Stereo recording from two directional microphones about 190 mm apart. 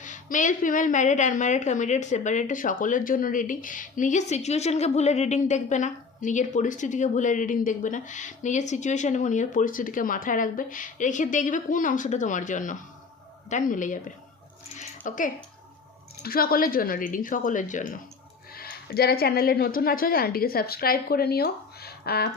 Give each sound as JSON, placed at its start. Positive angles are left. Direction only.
{"t": 0.0, "sound": "a woman's voice", "side_deg": 40}
{"t": 14.8, "sound": "a sound", "side_deg": 45}
{"t": 16.2, "sound": "speech", "side_deg": 50}
{"t": 18.5, "sound": "speech", "side_deg": 55}